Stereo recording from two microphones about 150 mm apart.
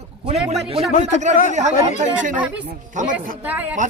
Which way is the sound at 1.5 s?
50° right (ahead or behind).